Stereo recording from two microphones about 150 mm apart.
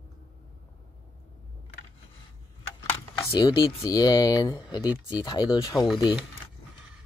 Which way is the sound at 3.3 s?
30° left (ahead or behind).